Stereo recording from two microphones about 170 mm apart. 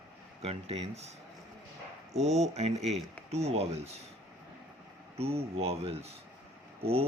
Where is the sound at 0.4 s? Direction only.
35° right (ahead or behind).